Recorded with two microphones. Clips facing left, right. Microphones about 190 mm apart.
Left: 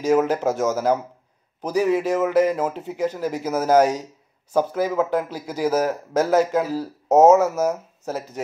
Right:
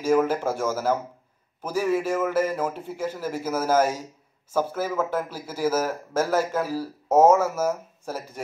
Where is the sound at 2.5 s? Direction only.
10° left (ahead or behind).